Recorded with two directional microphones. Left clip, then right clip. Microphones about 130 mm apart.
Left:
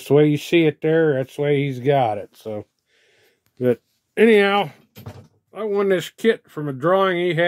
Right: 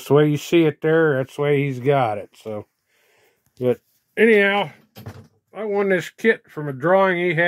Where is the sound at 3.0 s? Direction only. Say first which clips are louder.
Left 1 dB; 25° left (ahead or behind).